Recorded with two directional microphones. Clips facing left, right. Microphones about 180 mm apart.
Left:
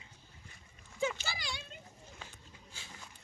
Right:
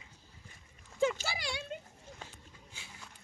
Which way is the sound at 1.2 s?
65° right (ahead or behind).